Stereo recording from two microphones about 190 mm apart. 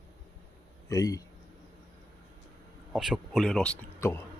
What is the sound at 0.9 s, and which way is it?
Speech, 20° left (ahead or behind).